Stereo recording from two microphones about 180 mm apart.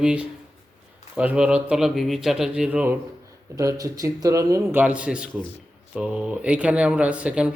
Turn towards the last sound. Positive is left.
turn(degrees=-5)  # may be behind; listen again after turning